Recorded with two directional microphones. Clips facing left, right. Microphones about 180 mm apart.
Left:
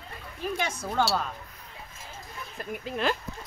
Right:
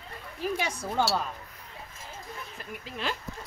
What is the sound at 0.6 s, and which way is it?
Speech, 10° right (ahead or behind).